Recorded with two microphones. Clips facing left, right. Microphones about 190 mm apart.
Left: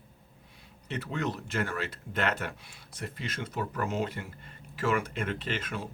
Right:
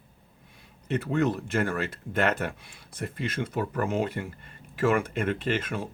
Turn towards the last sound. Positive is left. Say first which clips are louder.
# right 6 dB
turn(degrees=-50)  # may be behind; listen again after turning